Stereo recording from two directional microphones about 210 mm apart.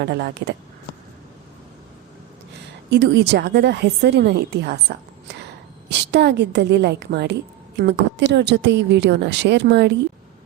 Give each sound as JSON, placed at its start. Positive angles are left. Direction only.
{"t": 0.0, "sound": "a woman's voice", "side_deg": -50}
{"t": 2.9, "sound": "a woman's voice", "side_deg": -55}
{"t": 6.1, "sound": "a woman's voice", "side_deg": -55}